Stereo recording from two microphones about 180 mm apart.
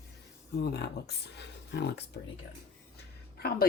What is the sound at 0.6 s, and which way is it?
Speech, 65° left (ahead or behind).